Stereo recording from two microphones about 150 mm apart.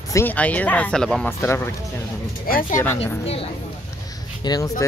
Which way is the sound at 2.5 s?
70° left (ahead or behind).